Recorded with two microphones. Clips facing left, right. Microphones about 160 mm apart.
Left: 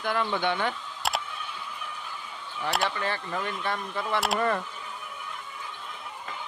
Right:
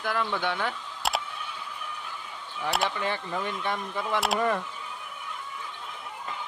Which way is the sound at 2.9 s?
15° right (ahead or behind).